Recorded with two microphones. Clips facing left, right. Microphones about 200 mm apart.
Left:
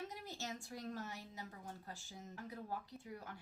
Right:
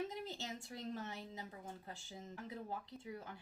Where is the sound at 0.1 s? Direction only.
25° right (ahead or behind).